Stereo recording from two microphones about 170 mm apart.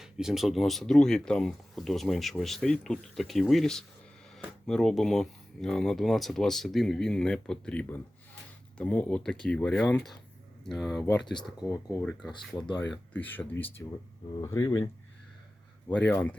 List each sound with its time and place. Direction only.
0.0 s speech: 5° right (ahead or behind)
11.7 s speech: 15° left (ahead or behind)
15.9 s speech: 10° left (ahead or behind)